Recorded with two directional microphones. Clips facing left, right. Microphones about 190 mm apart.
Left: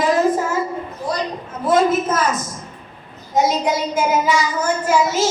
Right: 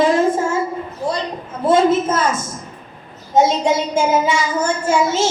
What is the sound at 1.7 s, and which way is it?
Speech, 25° right (ahead or behind).